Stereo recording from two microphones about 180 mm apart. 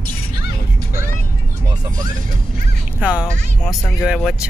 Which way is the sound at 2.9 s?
5° right (ahead or behind).